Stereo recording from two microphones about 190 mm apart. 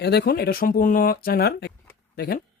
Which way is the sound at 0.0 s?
60° left (ahead or behind).